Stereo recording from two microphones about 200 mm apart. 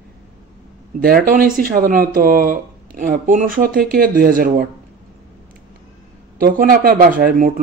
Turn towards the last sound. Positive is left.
turn(degrees=-45)  # may be behind; listen again after turning